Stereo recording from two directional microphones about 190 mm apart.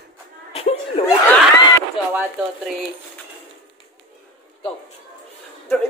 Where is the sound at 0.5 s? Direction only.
30° left (ahead or behind).